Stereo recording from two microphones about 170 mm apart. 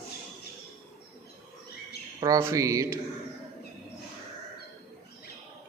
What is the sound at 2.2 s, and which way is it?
Speech, 20° right (ahead or behind).